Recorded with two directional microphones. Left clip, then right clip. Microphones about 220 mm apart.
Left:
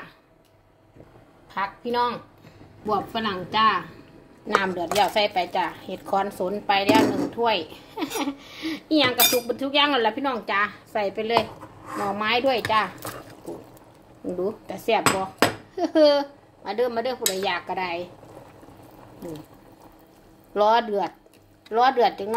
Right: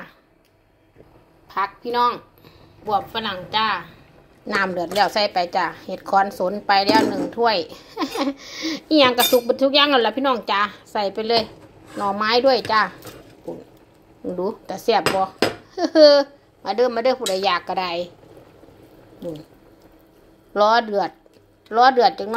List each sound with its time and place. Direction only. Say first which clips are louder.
1.5 s a woman's voice: right 4 dB; 30° right (ahead or behind)
4.6 s speech: right 2 dB; 15° right (ahead or behind)
14.4 s speech: right 4 dB; 20° right (ahead or behind)
20.5 s speech: right 3 dB; 15° right (ahead or behind)